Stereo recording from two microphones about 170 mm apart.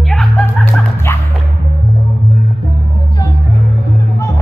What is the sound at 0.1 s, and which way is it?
Music, centre (ahead or behind).